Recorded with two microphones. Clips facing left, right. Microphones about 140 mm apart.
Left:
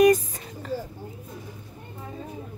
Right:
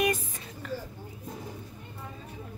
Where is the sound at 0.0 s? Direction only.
40° left (ahead or behind).